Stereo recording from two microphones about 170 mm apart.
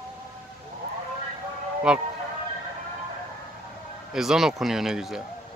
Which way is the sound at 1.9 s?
5° right (ahead or behind).